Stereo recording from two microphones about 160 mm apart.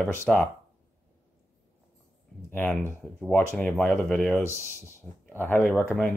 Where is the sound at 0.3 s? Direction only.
5° left (ahead or behind).